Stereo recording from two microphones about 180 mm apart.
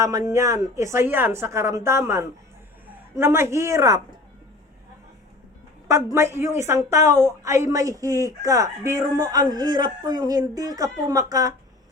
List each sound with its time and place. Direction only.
0.3 s a woman's voice: 15° right (ahead or behind)
5.9 s a woman's voice: 15° right (ahead or behind)